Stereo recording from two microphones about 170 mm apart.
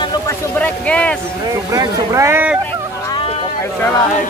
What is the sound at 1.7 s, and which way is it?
Speech, 20° right (ahead or behind).